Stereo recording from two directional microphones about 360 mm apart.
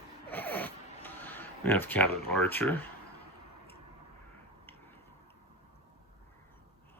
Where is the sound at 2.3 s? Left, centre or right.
Centre.